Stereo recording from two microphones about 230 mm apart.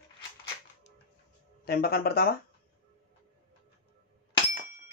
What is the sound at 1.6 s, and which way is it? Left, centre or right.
Speech, left.